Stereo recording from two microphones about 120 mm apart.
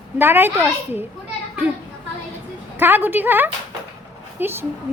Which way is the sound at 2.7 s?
15° right (ahead or behind).